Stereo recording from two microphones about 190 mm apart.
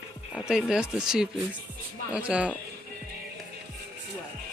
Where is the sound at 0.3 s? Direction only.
Centre (ahead or behind).